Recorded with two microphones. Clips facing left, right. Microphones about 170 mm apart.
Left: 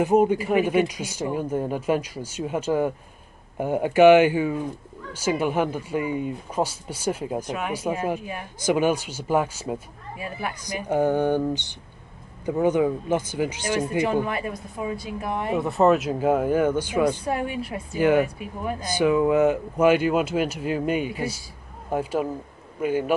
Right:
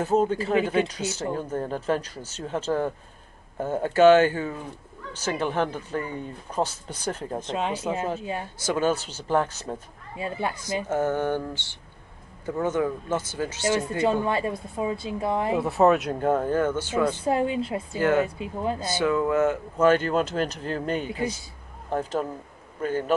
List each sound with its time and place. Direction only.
0.0 s speech: 15° left (ahead or behind)
10.1 s a woman's voice: 25° right (ahead or behind)
10.9 s speech: 15° left (ahead or behind)
14.2 s a woman's voice: 25° right (ahead or behind)
15.6 s speech: centre (ahead or behind)
17.2 s a woman's voice: 25° right (ahead or behind)
17.9 s speech: 15° left (ahead or behind)
18.2 s a woman's voice: 25° right (ahead or behind)
18.9 s speech: 15° left (ahead or behind)